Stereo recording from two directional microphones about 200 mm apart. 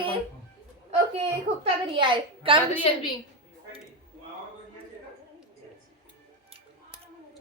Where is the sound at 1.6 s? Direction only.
25° right (ahead or behind).